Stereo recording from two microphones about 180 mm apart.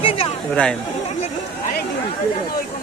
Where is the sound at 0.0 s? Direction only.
30° left (ahead or behind).